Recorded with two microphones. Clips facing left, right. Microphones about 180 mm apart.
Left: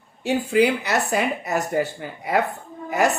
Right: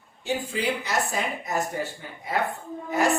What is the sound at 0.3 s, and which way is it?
Speech, 70° left (ahead or behind).